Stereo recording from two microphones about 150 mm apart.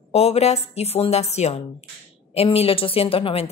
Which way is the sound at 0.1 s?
45° left (ahead or behind).